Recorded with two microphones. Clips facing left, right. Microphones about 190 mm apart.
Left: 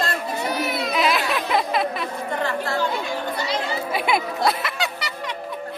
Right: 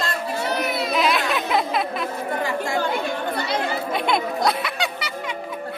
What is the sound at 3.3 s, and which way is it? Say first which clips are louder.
Chatter: right 1 dB; 55° right (ahead or behind).